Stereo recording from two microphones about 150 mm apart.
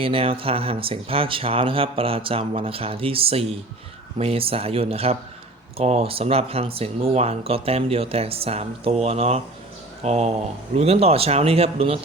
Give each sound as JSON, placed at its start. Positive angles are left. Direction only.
{"t": 0.0, "sound": "speech", "side_deg": -40}